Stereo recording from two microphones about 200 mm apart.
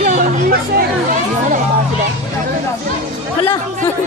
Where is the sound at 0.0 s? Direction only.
40° right (ahead or behind).